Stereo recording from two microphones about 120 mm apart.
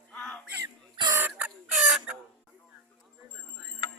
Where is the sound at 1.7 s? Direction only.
5° right (ahead or behind).